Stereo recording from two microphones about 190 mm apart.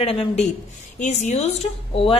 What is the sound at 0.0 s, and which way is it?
A woman's voice, 30° left (ahead or behind).